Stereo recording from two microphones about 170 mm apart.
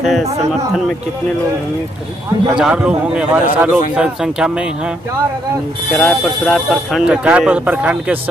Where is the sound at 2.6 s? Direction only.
5° right (ahead or behind).